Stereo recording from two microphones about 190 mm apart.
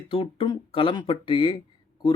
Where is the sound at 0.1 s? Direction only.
25° left (ahead or behind).